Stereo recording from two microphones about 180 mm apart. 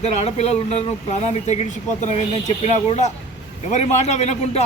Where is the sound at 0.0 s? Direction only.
35° left (ahead or behind).